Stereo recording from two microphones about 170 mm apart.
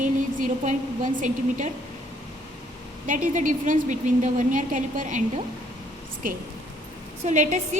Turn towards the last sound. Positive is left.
turn(degrees=-45)  # may be behind; listen again after turning